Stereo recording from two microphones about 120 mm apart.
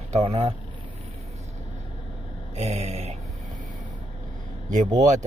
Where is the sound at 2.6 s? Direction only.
65° right (ahead or behind).